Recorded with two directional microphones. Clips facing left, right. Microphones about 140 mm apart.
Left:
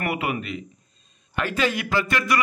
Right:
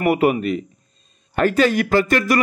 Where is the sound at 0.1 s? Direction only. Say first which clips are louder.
Right 10 dB; 40° right (ahead or behind).